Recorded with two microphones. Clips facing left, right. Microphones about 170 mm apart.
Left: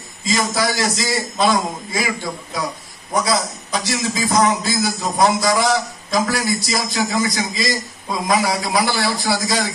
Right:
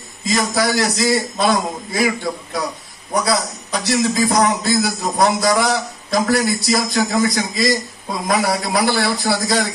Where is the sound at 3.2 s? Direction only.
60° right (ahead or behind).